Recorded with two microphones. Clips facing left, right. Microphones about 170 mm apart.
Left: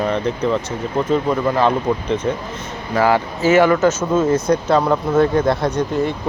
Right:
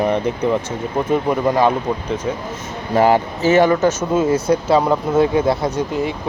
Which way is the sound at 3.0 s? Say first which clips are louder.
Right 2 dB; 20° right (ahead or behind).